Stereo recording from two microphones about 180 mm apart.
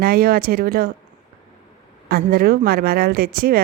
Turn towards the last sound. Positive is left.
turn(degrees=-55)  # may be behind; listen again after turning